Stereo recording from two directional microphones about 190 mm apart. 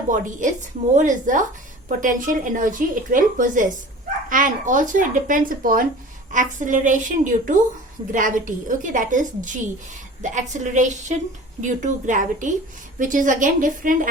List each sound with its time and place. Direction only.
0.1 s a woman's voice: 40° right (ahead or behind)